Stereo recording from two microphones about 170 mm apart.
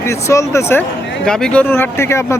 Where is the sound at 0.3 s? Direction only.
15° left (ahead or behind).